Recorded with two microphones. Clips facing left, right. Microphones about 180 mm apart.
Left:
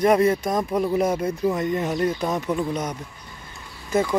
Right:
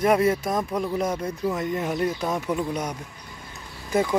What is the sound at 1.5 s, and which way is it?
Speech, 5° right (ahead or behind).